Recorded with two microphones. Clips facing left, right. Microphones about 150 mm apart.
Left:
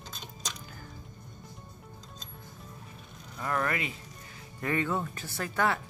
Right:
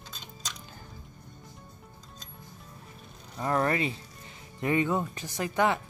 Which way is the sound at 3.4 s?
30° right (ahead or behind).